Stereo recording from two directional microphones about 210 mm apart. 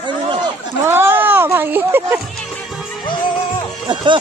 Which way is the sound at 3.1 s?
20° left (ahead or behind).